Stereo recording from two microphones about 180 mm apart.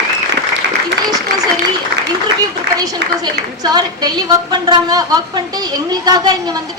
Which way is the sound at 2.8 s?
20° right (ahead or behind).